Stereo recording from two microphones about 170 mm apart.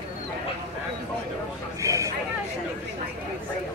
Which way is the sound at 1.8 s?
20° right (ahead or behind).